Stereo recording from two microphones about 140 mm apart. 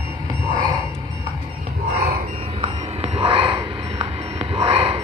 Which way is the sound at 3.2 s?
35° right (ahead or behind).